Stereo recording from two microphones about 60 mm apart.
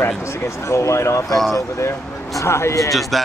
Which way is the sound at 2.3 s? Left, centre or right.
Left.